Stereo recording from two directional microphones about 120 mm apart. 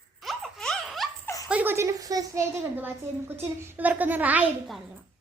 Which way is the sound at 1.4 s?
15° right (ahead or behind).